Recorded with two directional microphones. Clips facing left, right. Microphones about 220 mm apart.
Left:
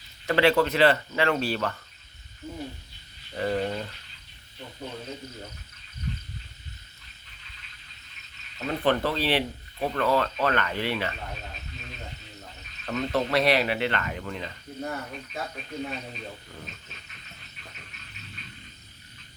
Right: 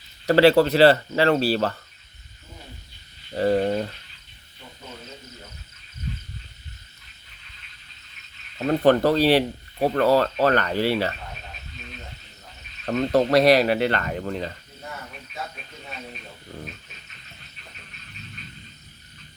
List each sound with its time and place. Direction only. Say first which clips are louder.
0.3 s speech: right 6 dB; 35° right (ahead or behind)
3.3 s speech: right 7 dB; 35° right (ahead or behind)
8.5 s speech: right 7 dB; 40° right (ahead or behind)
12.8 s speech: right 7 dB; 40° right (ahead or behind)